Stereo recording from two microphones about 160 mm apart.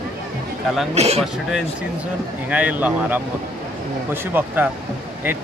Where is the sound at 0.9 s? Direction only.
40° right (ahead or behind).